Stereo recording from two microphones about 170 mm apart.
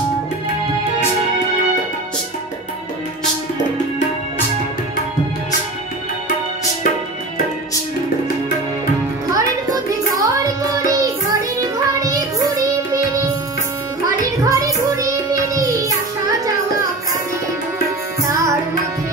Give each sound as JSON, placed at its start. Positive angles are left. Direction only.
{"t": 9.3, "sound": "music", "side_deg": -20}
{"t": 14.4, "sound": "child singing", "side_deg": -20}